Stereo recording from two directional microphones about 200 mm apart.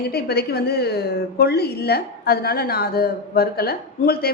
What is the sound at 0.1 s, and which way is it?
A woman's voice, 50° left (ahead or behind).